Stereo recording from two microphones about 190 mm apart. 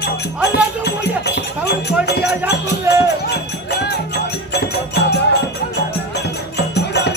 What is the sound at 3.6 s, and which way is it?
Music, 60° left (ahead or behind).